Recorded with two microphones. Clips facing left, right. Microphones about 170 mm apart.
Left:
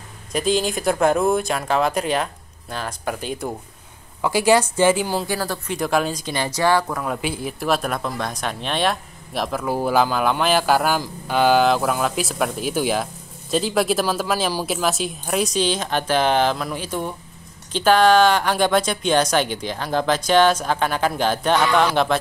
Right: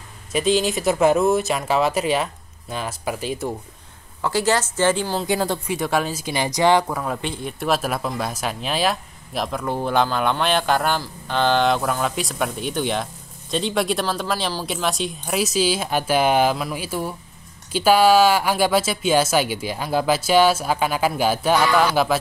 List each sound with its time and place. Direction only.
0.3 s speech: centre (ahead or behind)
4.2 s a woman's voice: 15° left (ahead or behind)
5.2 s a woman's voice: 20° right (ahead or behind)
5.7 s speech: centre (ahead or behind); by 6.9 s 20° right (ahead or behind)
6.9 s speech: 5° right (ahead or behind)
7.2 s speech: 5° left (ahead or behind)